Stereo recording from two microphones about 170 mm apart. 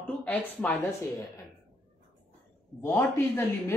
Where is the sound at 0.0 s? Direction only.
5° left (ahead or behind).